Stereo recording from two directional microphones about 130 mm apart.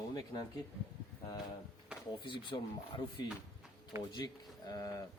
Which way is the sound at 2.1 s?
40° left (ahead or behind).